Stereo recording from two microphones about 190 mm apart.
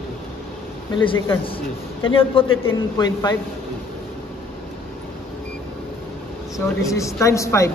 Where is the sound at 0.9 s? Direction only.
25° left (ahead or behind).